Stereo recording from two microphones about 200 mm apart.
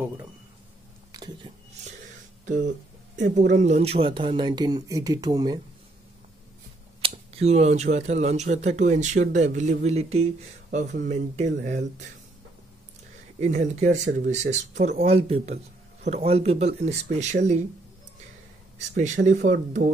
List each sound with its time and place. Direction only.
1.1 s a sound: 20° right (ahead or behind)
2.4 s speech: 40° right (ahead or behind); by 5.6 s 20° right (ahead or behind)
7.0 s speech: 30° right (ahead or behind)
13.4 s speech: 35° right (ahead or behind)
18.9 s speech: 40° right (ahead or behind)